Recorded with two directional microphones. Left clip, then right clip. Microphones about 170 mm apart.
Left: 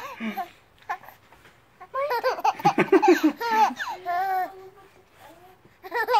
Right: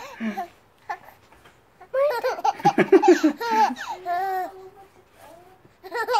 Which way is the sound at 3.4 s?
15° right (ahead or behind).